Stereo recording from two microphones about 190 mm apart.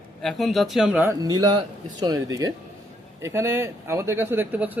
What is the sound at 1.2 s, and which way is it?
Speech, 20° right (ahead or behind).